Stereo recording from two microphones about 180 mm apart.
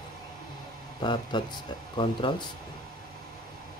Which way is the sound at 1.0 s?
25° left (ahead or behind).